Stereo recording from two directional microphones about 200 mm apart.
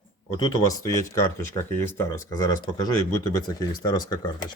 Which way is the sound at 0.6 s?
15° left (ahead or behind).